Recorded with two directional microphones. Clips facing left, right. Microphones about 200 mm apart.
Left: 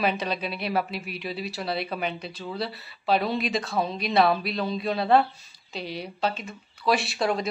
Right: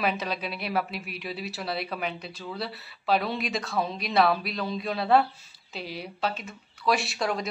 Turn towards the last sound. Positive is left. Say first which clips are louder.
# left 3 dB
turn(degrees=0)  # may be behind; listen again after turning